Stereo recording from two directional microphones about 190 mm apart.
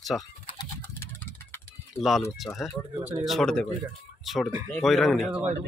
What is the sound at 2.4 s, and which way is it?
Speech, centre (ahead or behind).